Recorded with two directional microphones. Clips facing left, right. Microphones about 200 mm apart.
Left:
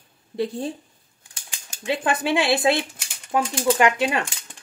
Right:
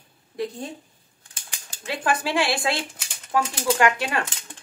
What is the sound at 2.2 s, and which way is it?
Speech, 20° left (ahead or behind).